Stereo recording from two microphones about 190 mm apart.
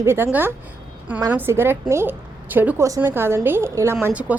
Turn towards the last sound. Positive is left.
turn(degrees=-5)  # may be behind; listen again after turning